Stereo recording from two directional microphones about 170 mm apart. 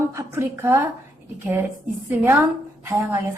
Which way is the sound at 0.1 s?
15° right (ahead or behind).